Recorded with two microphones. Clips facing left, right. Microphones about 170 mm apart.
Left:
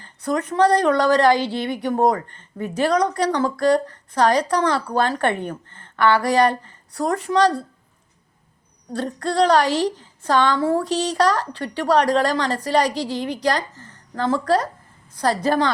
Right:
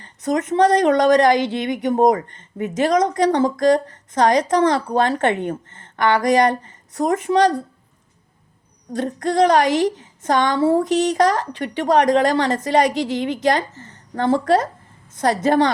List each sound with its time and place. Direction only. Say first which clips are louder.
0.0 s a woman's voice: right 2 dB; 20° right (ahead or behind)
8.9 s a woman's voice: right 3 dB; 20° right (ahead or behind)